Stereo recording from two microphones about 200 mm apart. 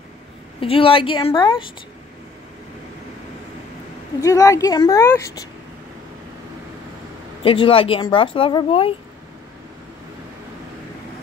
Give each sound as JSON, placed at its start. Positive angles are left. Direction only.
{"t": 0.6, "sound": "a woman's voice", "side_deg": 25}
{"t": 4.2, "sound": "a woman's voice", "side_deg": 15}
{"t": 7.4, "sound": "a woman's voice", "side_deg": 25}